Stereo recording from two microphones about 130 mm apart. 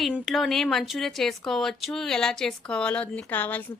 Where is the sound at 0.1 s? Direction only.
Centre (ahead or behind).